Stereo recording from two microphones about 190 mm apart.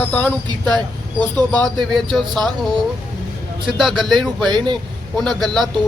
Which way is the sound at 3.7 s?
Centre (ahead or behind).